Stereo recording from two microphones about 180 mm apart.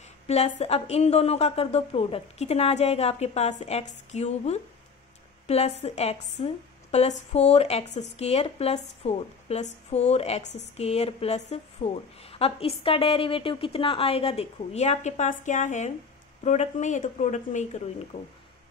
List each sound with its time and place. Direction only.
0.3 s a woman's voice: 35° left (ahead or behind)
18.1 s speech: 30° left (ahead or behind)